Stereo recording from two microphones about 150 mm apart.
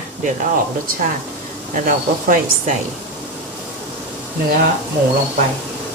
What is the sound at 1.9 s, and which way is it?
Speech, 65° right (ahead or behind).